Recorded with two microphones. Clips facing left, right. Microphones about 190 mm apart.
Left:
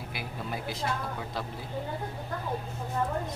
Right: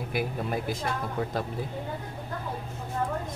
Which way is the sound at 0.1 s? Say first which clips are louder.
Right 8 dB; 50° right (ahead or behind).